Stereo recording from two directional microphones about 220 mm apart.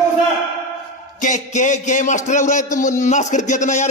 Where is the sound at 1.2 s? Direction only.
35° left (ahead or behind).